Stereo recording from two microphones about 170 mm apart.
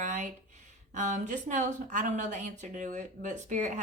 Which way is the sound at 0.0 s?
50° right (ahead or behind).